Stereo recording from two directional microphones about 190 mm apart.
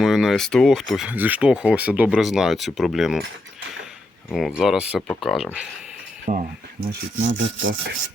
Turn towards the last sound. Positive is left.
turn(degrees=-45)  # may be behind; listen again after turning